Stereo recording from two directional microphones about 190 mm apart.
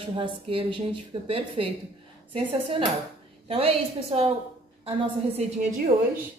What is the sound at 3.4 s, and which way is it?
A woman's voice, 30° right (ahead or behind).